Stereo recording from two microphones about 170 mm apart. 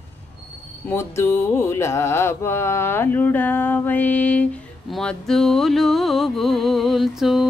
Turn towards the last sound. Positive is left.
turn(degrees=0)  # may be behind; listen again after turning